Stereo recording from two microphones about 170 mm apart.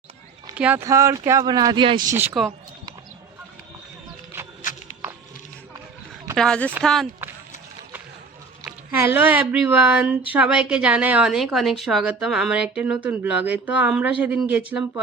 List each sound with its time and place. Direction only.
0.5 s speech: 10° right (ahead or behind); by 2.0 s 30° right (ahead or behind)
2.0 s a woman's voice: 10° right (ahead or behind)
5.0 s a sound: 10° right (ahead or behind)
6.3 s speech: 5° left (ahead or behind)
8.6 s a woman's voice: 15° right (ahead or behind)